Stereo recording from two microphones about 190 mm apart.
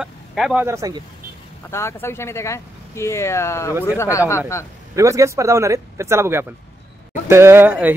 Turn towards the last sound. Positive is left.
turn(degrees=-10)  # may be behind; listen again after turning